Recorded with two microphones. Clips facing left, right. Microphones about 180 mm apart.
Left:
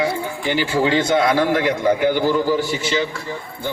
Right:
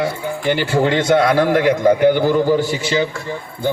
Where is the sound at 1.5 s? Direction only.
45° right (ahead or behind).